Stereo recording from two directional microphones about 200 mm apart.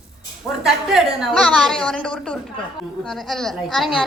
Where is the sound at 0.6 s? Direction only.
Centre (ahead or behind).